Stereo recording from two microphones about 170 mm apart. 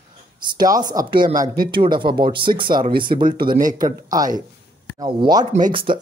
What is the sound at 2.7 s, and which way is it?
Speech, 60° right (ahead or behind).